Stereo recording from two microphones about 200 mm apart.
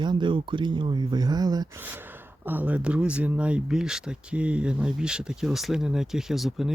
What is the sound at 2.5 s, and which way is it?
Speech, 10° right (ahead or behind).